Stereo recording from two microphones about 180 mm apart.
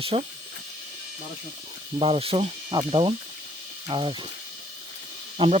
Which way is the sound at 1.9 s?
30° right (ahead or behind).